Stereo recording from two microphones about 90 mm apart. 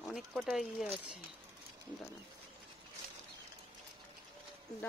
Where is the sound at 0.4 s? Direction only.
5° right (ahead or behind).